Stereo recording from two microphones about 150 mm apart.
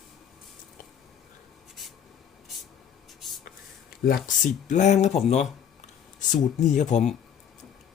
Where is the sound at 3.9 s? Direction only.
85° left.